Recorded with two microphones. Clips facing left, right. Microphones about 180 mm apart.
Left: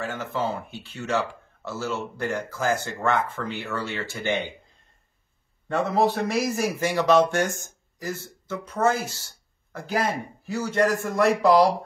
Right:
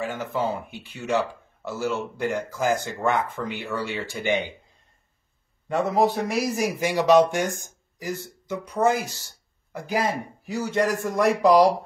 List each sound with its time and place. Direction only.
0.0 s speech: 15° right (ahead or behind)
5.7 s speech: 10° right (ahead or behind)